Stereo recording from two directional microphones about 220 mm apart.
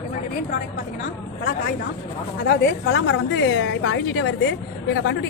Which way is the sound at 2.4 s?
50° left (ahead or behind).